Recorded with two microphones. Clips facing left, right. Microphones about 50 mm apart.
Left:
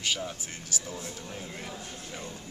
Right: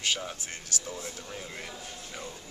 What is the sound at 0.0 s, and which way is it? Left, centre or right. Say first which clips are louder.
Speech: even; centre.